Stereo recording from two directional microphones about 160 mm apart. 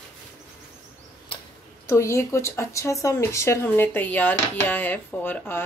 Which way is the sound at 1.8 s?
20° left (ahead or behind).